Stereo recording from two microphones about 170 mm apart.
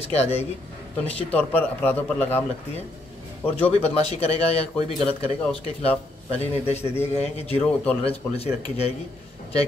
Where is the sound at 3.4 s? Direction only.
10° left (ahead or behind).